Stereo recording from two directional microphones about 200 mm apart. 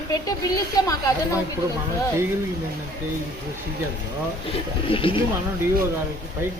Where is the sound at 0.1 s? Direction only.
15° left (ahead or behind).